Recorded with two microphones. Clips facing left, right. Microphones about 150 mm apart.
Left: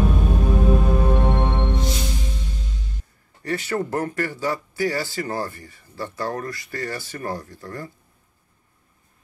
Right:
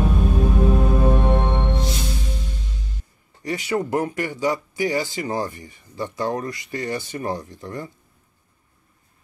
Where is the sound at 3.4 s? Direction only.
15° right (ahead or behind).